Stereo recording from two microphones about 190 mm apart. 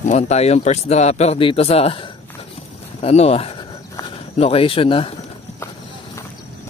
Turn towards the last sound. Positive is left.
turn(degrees=30)  # may be behind; listen again after turning